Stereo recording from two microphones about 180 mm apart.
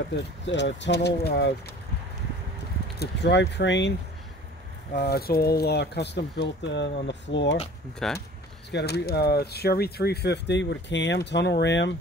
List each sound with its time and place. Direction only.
0.1 s speech: 80° left
3.0 s speech: 70° left (ahead or behind)
4.9 s speech: 60° left (ahead or behind)
8.0 s speech: 5° left (ahead or behind)
8.7 s speech: 65° left (ahead or behind)